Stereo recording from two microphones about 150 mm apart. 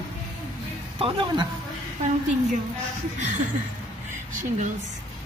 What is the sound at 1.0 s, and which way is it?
Speech, 30° right (ahead or behind).